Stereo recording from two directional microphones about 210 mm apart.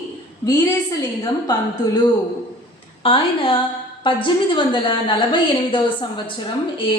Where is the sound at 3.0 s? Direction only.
25° left (ahead or behind).